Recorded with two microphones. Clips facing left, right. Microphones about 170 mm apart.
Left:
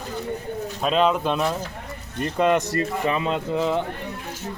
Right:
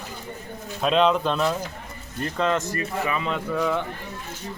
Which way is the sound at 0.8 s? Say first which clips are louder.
Right 1 dB; 5° left (ahead or behind).